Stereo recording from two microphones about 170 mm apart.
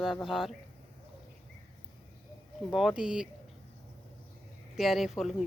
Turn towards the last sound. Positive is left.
turn(degrees=0)  # may be behind; listen again after turning